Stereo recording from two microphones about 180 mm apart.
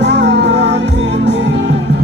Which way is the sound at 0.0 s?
70° right (ahead or behind).